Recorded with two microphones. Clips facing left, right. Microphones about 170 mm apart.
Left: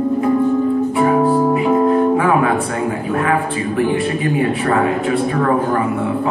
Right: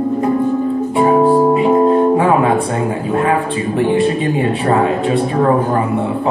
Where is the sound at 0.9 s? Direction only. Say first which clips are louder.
Right 5 dB; 25° right (ahead or behind).